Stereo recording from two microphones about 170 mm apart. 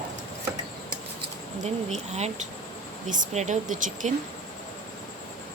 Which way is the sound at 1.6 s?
40° right (ahead or behind).